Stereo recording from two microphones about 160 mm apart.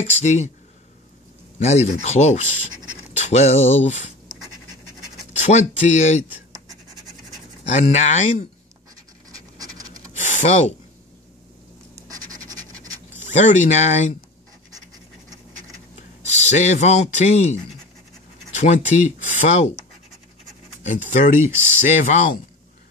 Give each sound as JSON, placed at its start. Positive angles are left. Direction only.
{"t": 0.0, "sound": "speech", "side_deg": 45}
{"t": 1.6, "sound": "speech", "side_deg": 45}
{"t": 5.4, "sound": "speech", "side_deg": 45}
{"t": 6.2, "sound": "scratch", "side_deg": -10}
{"t": 7.7, "sound": "speech", "side_deg": 45}
{"t": 9.3, "sound": "scratch", "side_deg": -25}
{"t": 10.2, "sound": "speech", "side_deg": 50}
{"t": 12.1, "sound": "scratch", "side_deg": -20}
{"t": 13.2, "sound": "speech", "side_deg": 50}
{"t": 16.3, "sound": "speech", "side_deg": 45}
{"t": 18.6, "sound": "speech", "side_deg": 50}
{"t": 20.8, "sound": "speech", "side_deg": 50}
{"t": 21.4, "sound": "speech", "side_deg": -15}